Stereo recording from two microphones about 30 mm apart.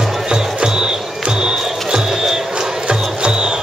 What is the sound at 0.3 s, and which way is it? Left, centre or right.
Music, right.